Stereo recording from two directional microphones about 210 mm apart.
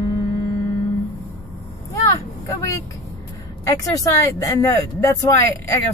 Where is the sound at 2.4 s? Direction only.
15° left (ahead or behind).